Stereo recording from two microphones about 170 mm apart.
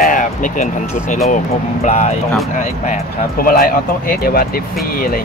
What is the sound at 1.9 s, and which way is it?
Speech, 40° left (ahead or behind).